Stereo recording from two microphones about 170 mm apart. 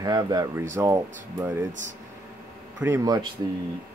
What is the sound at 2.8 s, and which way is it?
Speech, 15° right (ahead or behind).